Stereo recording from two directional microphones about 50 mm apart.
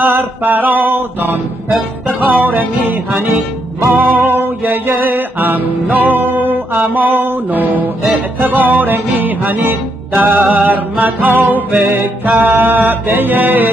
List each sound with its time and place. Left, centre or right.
0.0 s music: right
2.1 s music: right